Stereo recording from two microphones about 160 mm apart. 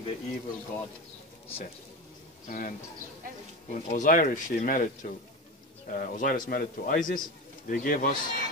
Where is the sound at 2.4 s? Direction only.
55° left (ahead or behind).